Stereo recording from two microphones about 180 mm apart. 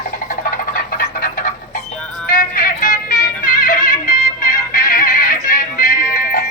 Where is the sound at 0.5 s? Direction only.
50° left (ahead or behind).